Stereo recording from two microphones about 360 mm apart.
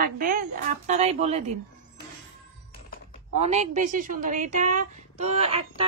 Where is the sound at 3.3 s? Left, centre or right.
Centre.